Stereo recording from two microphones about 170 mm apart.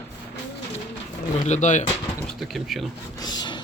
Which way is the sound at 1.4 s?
45° left (ahead or behind).